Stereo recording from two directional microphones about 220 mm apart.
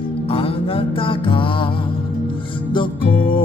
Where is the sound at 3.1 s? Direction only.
25° left (ahead or behind).